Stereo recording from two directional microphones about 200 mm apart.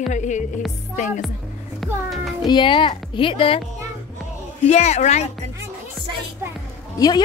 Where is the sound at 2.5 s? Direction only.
25° left (ahead or behind).